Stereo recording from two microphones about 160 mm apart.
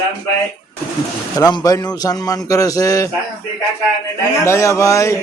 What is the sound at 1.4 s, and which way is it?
Speech, 20° left (ahead or behind).